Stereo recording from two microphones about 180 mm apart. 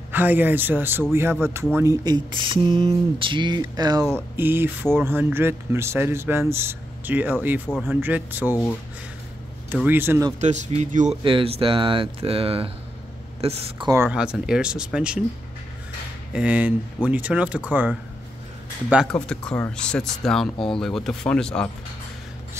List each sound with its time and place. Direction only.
0.1 s speech: 10° right (ahead or behind)
9.7 s speech: 10° right (ahead or behind)
10.4 s speech: 40° right (ahead or behind)
11.2 s speech: 30° right (ahead or behind)
13.8 s speech: 10° right (ahead or behind)
16.3 s speech: 10° right (ahead or behind)
19.1 s speech: 5° left (ahead or behind)